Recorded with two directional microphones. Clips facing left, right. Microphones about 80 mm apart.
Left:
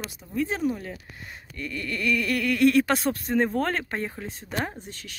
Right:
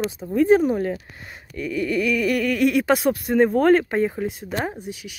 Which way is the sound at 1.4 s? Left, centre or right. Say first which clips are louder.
Right 9 dB; centre.